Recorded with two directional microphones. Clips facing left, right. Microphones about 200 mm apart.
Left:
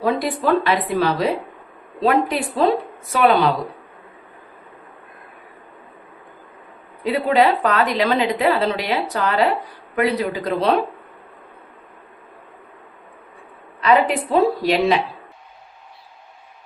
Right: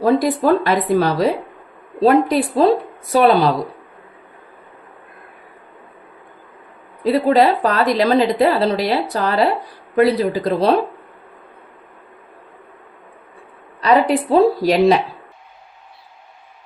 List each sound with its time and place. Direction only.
0.0 s a woman's voice: 40° right (ahead or behind)
7.0 s a woman's voice: 35° right (ahead or behind)
13.8 s a woman's voice: 35° right (ahead or behind)